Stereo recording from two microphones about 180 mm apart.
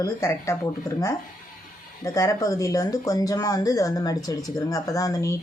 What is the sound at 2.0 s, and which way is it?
Speech, 20° left (ahead or behind).